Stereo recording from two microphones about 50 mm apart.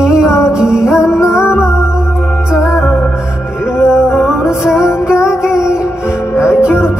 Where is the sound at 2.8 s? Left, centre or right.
Left.